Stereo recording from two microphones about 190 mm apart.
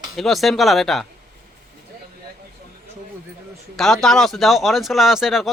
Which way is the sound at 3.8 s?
Centre (ahead or behind).